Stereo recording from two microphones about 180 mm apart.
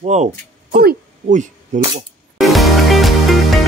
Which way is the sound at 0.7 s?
50° right (ahead or behind).